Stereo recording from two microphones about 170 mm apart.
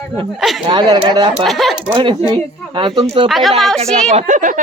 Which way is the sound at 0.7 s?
25° right (ahead or behind).